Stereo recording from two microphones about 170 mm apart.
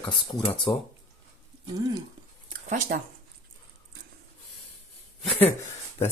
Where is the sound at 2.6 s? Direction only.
50° right (ahead or behind).